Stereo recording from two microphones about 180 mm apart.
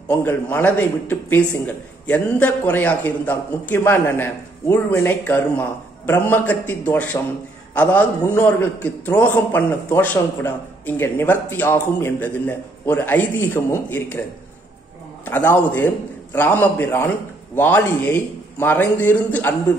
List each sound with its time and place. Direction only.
0.2 s a man's voice: 10° left (ahead or behind)
15.2 s a man's voice: 10° left (ahead or behind)